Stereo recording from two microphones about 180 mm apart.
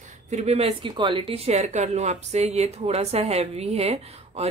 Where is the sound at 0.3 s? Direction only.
40° right (ahead or behind).